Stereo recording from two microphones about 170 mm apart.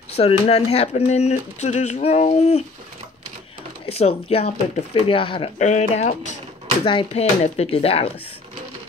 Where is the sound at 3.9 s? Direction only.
35° left (ahead or behind).